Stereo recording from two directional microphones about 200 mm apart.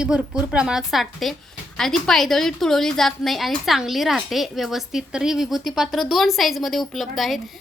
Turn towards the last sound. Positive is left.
turn(degrees=0)  # may be behind; listen again after turning